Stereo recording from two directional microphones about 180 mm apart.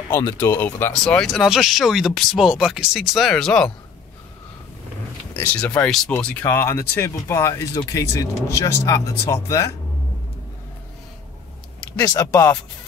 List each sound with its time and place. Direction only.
0.4 s speech: 10° left (ahead or behind)
5.3 s speech: 10° left (ahead or behind)
12.0 s speech: 20° left (ahead or behind)